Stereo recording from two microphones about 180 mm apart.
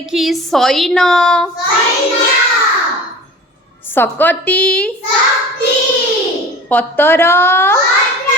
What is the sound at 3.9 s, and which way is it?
A woman's voice, 10° left (ahead or behind).